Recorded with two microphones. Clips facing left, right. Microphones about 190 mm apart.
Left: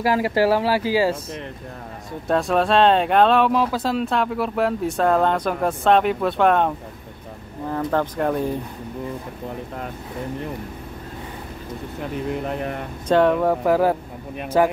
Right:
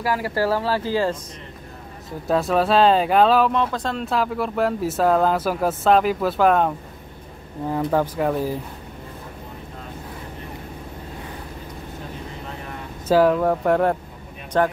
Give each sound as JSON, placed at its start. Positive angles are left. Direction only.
{"t": 0.0, "sound": "speech", "side_deg": 20}
{"t": 2.2, "sound": "speech", "side_deg": 0}
{"t": 7.7, "sound": "speech", "side_deg": -10}
{"t": 12.4, "sound": "a sound", "side_deg": 65}
{"t": 13.1, "sound": "speech", "side_deg": 0}